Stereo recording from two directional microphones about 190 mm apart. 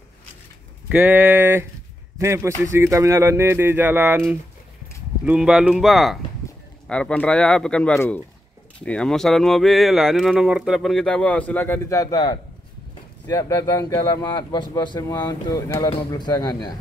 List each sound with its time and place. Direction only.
0.8 s a man's voice: 10° right (ahead or behind)
5.2 s speech: 5° right (ahead or behind); by 16.5 s 20° left (ahead or behind)